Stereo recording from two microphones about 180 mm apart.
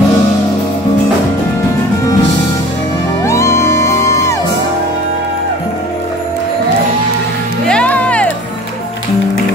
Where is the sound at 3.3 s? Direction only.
15° left (ahead or behind).